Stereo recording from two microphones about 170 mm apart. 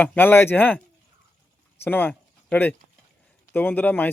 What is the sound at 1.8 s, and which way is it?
Speech, 10° left (ahead or behind).